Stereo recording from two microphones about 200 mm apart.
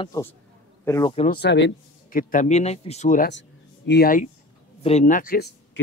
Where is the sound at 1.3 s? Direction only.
60° left (ahead or behind).